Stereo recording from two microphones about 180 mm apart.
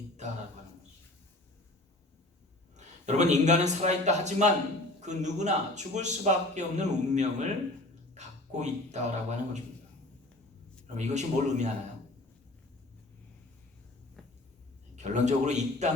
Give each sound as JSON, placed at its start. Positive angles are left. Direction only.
{"t": 2.7, "sound": "a man's voice", "side_deg": -40}
{"t": 10.9, "sound": "a man's voice", "side_deg": -40}
{"t": 14.9, "sound": "a man's voice", "side_deg": -40}